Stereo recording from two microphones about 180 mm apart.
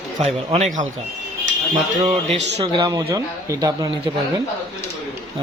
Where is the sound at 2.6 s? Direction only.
20° right (ahead or behind).